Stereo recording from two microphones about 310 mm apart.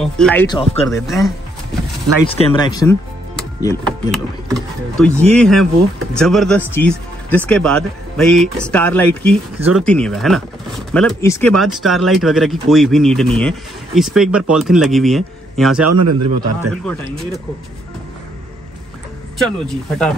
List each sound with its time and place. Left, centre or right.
0.0 s speech: centre
0.8 s speech: centre
2.2 s speech: centre
5.2 s speech: centre
15.8 s a man's voice: right
16.7 s speech: centre
19.3 s speech: centre